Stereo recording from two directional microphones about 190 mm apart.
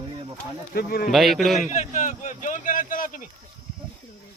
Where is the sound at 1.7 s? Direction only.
40° left (ahead or behind).